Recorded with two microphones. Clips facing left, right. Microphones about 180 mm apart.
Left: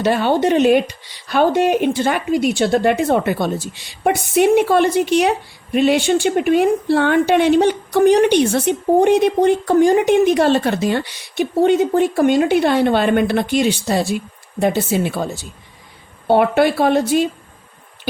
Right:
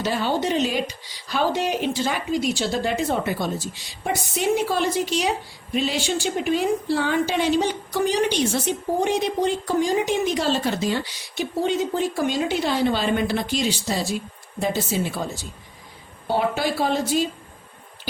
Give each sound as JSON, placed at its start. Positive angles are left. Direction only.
{"t": 0.0, "sound": "a woman's voice", "side_deg": 60}